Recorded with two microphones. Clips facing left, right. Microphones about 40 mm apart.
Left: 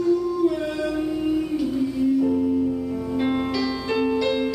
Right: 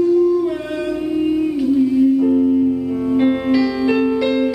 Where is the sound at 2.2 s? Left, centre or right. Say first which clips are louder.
Right 6 dB; right.